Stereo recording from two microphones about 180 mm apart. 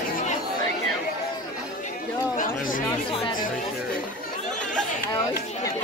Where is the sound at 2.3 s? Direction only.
50° left (ahead or behind).